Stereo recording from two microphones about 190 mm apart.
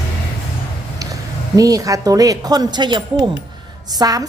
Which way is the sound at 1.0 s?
20° right (ahead or behind).